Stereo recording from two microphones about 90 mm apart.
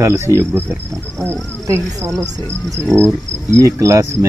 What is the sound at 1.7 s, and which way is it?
Speech, 30° right (ahead or behind).